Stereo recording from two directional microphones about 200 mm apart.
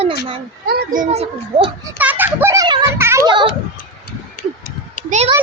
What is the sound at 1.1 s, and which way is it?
Speech, 30° right (ahead or behind).